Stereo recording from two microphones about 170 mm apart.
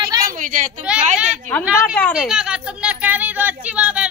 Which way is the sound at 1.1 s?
5° right (ahead or behind).